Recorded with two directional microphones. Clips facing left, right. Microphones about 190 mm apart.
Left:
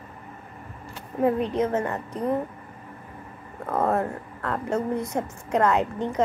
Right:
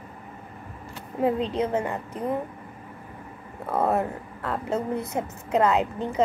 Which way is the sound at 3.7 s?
15° right (ahead or behind).